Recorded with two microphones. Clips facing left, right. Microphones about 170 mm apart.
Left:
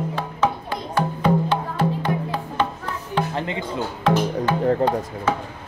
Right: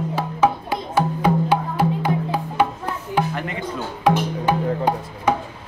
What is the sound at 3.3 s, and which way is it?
Speech, 25° left (ahead or behind).